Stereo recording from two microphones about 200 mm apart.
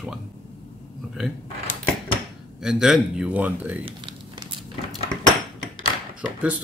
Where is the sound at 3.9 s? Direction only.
25° right (ahead or behind).